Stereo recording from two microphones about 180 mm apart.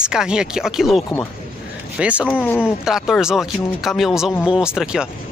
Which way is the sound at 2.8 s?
Centre (ahead or behind).